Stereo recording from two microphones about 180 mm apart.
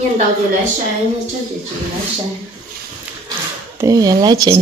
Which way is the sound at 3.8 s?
20° right (ahead or behind).